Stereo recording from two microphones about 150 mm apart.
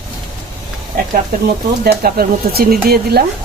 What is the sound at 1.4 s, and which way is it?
Speech, 90° right.